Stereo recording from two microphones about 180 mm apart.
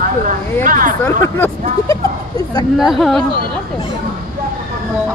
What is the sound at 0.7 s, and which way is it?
Speech, 50° right (ahead or behind).